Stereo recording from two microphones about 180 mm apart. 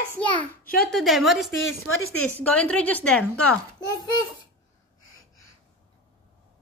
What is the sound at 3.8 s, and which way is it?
Child singing, 20° left (ahead or behind).